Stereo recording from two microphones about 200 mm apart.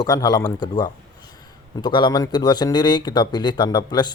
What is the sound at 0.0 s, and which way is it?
Speech, 20° left (ahead or behind).